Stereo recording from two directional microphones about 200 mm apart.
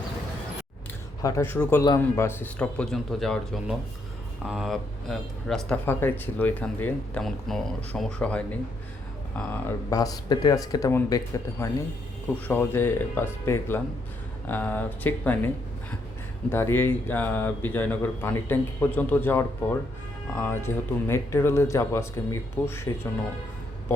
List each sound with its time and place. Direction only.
1.2 s speech: 15° left (ahead or behind)
12.5 s speech: 10° left (ahead or behind)
16.5 s speech: 10° left (ahead or behind)